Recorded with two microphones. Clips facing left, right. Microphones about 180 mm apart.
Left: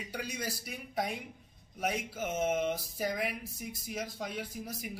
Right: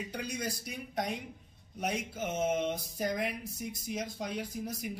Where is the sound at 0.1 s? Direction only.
5° left (ahead or behind).